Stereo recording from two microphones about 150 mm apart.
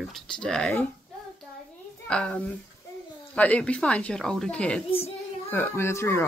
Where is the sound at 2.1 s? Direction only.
5° left (ahead or behind).